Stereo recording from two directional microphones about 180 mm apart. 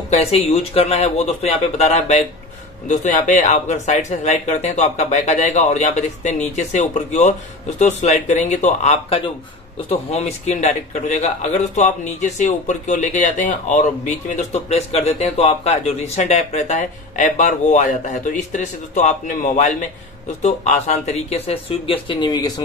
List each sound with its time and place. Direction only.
0.1 s a man's voice: 35° left (ahead or behind)